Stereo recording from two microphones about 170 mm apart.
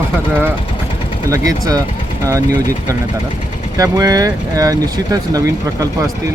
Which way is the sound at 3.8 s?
20° right (ahead or behind).